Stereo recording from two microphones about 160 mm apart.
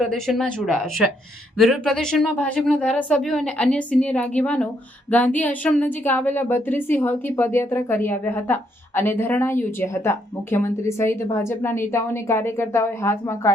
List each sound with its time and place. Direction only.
0.0 s a woman's voice: centre (ahead or behind); by 13.5 s 15° left (ahead or behind)